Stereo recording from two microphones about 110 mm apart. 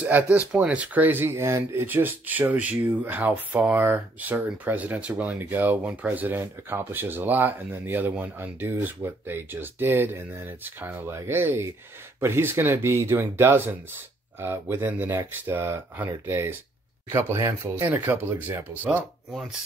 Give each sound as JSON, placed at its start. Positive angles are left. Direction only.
{"t": 0.0, "sound": "speech", "side_deg": -15}